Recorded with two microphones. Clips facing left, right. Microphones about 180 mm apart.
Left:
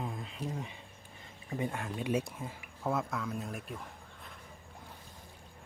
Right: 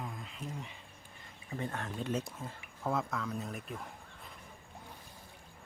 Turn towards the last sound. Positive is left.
turn(degrees=0)  # may be behind; listen again after turning